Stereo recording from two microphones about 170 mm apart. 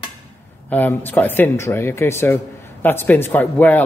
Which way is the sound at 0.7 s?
10° left (ahead or behind).